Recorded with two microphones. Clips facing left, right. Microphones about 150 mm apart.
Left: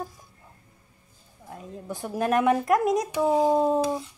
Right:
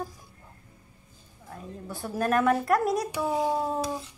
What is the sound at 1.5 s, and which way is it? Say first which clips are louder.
Speech: left 3 dB; 15° left (ahead or behind).